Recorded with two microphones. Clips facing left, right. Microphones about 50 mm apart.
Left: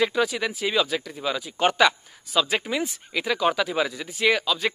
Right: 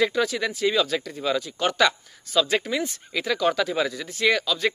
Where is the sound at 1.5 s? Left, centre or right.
Left.